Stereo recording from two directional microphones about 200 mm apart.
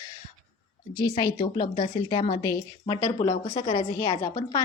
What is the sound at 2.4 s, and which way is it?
Speech, 15° left (ahead or behind).